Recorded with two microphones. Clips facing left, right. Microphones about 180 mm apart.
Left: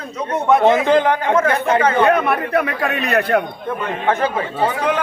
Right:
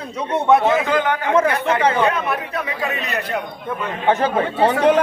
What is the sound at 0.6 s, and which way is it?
Speech, 30° left (ahead or behind).